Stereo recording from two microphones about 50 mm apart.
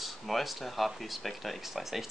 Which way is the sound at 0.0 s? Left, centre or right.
Centre.